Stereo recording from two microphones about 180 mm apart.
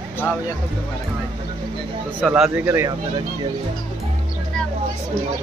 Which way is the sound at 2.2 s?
Centre (ahead or behind).